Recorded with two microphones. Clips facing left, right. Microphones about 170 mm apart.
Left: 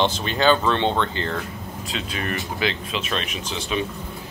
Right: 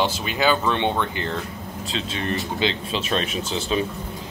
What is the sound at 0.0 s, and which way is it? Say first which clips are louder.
Speech: left 2 dB; 10° right (ahead or behind).